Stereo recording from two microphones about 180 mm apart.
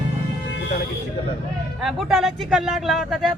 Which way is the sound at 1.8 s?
Centre (ahead or behind).